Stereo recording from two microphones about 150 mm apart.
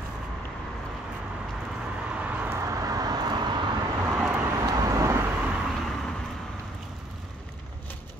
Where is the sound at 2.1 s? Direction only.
10° right (ahead or behind).